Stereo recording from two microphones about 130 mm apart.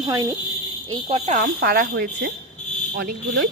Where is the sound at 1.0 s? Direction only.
55° right (ahead or behind).